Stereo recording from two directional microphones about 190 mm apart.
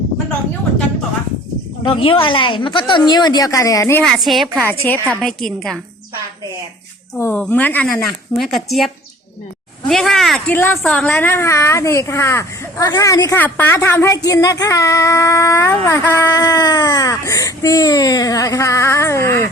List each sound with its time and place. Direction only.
1.8 s a woman's voice: 30° left (ahead or behind)
4.0 s a woman's voice: centre (ahead or behind)
7.2 s speech: 10° left (ahead or behind)
9.9 s speech: centre (ahead or behind)